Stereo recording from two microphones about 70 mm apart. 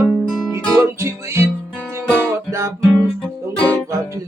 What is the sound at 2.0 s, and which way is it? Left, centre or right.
Music, centre.